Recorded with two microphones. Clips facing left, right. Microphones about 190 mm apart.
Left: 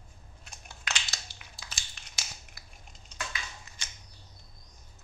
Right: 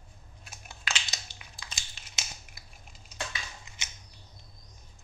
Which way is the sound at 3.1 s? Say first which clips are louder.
Right 1 dB; 20° right (ahead or behind).